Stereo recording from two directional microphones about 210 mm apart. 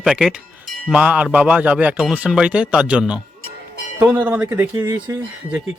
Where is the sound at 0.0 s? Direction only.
Centre (ahead or behind).